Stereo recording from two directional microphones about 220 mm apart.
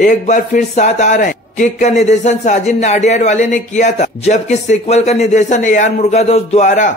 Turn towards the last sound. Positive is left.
turn(degrees=35)  # may be behind; listen again after turning